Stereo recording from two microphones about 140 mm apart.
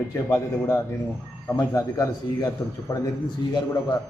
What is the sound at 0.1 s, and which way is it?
A man's voice, 20° left (ahead or behind).